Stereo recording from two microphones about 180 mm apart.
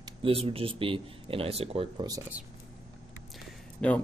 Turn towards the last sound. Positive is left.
turn(degrees=5)  # may be behind; listen again after turning